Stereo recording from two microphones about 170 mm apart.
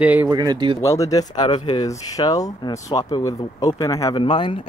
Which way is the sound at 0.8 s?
20° left (ahead or behind).